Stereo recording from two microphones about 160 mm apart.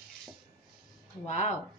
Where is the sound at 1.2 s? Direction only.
50° left (ahead or behind).